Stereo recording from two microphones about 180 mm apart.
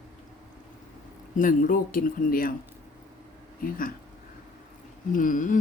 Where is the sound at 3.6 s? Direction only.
50° left (ahead or behind).